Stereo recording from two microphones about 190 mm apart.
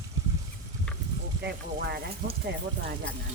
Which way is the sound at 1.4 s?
60° right (ahead or behind).